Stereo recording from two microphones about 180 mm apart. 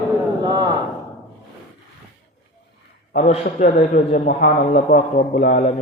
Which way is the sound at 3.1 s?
45° left (ahead or behind).